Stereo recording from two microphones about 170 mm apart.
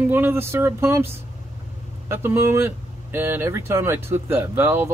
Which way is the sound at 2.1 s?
15° right (ahead or behind).